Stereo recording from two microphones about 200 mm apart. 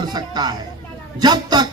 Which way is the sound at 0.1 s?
20° right (ahead or behind).